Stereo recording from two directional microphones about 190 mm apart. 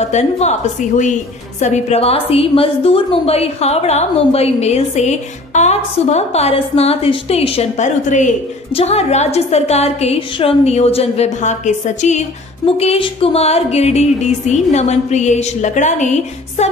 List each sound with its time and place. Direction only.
0.0 s a woman's voice: 35° left (ahead or behind)